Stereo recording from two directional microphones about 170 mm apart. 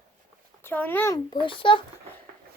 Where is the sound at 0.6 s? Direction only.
10° left (ahead or behind).